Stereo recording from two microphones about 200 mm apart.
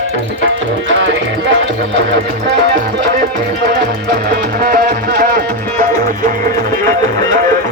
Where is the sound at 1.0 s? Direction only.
65° right (ahead or behind).